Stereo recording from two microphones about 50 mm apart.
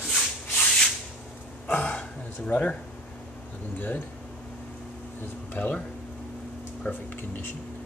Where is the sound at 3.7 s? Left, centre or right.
Left.